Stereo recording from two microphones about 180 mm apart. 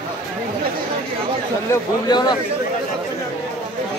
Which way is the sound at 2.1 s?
25° left (ahead or behind).